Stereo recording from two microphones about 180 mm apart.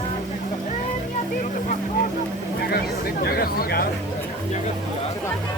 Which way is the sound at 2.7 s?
60° left (ahead or behind).